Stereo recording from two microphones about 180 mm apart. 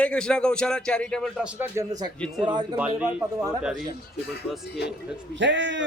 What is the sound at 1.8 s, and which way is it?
Speech, 20° right (ahead or behind).